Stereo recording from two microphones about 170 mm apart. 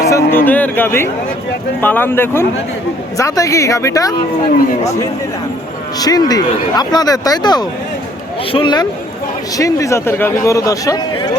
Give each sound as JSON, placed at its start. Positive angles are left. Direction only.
{"t": 0.0, "sound": "a woman's voice", "side_deg": 15}